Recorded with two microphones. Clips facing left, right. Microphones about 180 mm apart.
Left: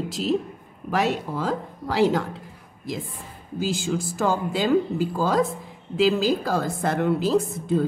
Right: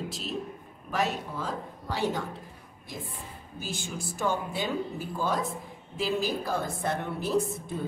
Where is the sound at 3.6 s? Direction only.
90° left.